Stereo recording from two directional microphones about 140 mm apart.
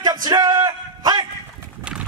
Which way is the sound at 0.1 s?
30° right (ahead or behind).